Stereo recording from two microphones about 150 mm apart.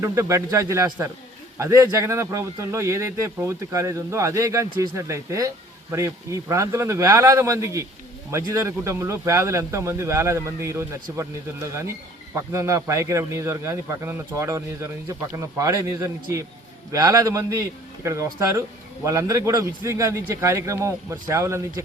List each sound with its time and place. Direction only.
0.0 s speech: 20° right (ahead or behind)